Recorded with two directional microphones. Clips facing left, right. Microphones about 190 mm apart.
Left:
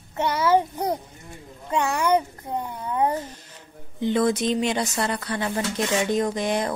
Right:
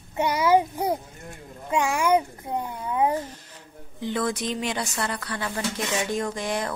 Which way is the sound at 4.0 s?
20° left (ahead or behind).